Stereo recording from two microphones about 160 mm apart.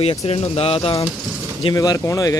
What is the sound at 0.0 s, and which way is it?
Speech, 40° left (ahead or behind).